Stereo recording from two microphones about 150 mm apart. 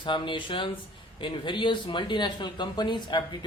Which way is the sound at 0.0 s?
30° left (ahead or behind).